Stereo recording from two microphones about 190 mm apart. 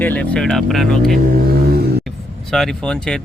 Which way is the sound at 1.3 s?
50° right (ahead or behind).